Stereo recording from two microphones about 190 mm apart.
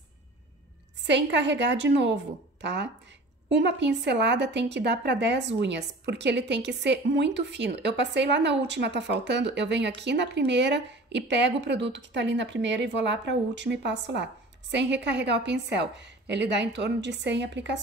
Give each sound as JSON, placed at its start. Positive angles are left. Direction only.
{"t": 1.0, "sound": "a woman's voice", "side_deg": -70}